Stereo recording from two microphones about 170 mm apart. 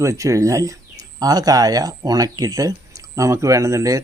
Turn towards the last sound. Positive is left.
turn(degrees=-20)  # may be behind; listen again after turning